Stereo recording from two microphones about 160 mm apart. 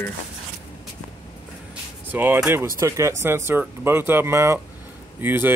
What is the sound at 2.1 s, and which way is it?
Speech, 10° right (ahead or behind).